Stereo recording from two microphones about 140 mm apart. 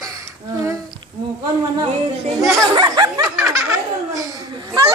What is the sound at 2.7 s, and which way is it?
Snicker, 30° right (ahead or behind).